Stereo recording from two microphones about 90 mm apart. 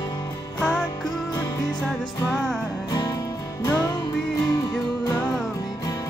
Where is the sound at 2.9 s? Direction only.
50° left (ahead or behind).